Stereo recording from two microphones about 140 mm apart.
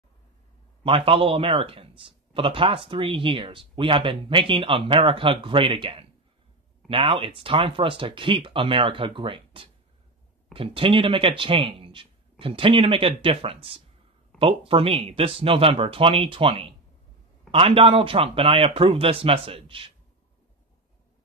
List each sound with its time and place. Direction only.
0.8 s speech: 40° right (ahead or behind)